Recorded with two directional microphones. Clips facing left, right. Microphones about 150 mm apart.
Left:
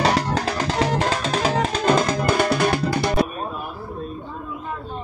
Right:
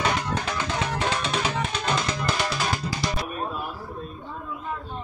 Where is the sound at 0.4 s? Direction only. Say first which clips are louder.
Left 6 dB; 35° left (ahead or behind); by 3.3 s 60° left (ahead or behind).